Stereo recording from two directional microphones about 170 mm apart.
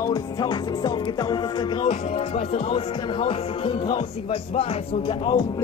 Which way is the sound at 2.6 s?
30° left (ahead or behind).